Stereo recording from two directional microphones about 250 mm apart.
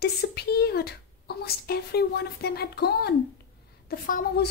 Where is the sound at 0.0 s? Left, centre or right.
Left.